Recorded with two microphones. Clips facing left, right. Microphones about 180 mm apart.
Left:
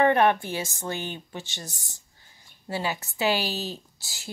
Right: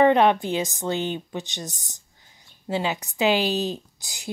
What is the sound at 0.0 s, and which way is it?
A woman's voice, 20° right (ahead or behind).